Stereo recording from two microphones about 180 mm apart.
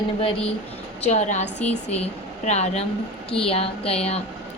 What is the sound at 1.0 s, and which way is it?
Speech, 40° left (ahead or behind).